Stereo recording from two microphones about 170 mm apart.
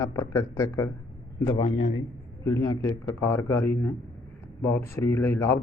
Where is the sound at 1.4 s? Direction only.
30° left (ahead or behind).